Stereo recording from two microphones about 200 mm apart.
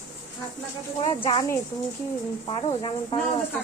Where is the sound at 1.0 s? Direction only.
25° left (ahead or behind).